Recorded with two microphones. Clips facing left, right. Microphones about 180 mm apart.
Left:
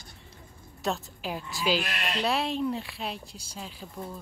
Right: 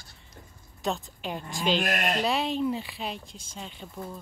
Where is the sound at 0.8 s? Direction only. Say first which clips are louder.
Even; centre (ahead or behind).